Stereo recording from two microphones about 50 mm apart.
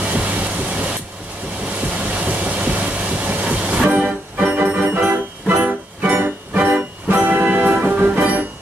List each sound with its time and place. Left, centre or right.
0.0 s a sound: right
2.1 s train: right
3.9 s organ: right
5.6 s music: right